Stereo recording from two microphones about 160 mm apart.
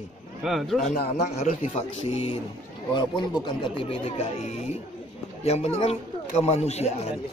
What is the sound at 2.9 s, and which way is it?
Speech, 30° left (ahead or behind).